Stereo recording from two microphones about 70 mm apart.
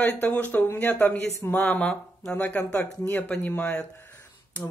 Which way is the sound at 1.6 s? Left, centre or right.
Centre.